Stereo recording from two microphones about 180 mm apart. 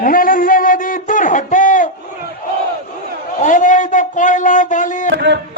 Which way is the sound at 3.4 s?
45° left (ahead or behind).